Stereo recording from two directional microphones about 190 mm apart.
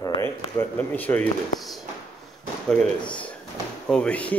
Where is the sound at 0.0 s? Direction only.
20° left (ahead or behind).